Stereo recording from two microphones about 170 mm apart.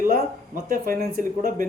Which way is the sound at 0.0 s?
55° right (ahead or behind).